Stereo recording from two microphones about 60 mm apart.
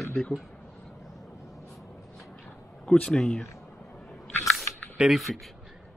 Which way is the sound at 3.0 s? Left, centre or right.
Centre.